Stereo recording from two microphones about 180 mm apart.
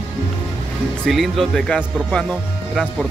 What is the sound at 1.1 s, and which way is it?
Speech, centre (ahead or behind).